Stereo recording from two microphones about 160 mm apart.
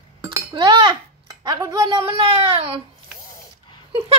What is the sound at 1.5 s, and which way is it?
A woman's voice, 25° right (ahead or behind).